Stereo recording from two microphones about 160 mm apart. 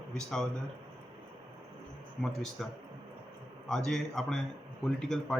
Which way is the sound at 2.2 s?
Centre (ahead or behind).